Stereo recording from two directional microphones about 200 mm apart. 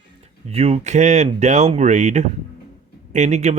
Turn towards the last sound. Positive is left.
turn(degrees=-35)  # may be behind; listen again after turning